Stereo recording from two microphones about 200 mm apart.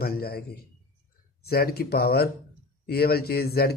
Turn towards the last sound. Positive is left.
turn(degrees=50)  # may be behind; listen again after turning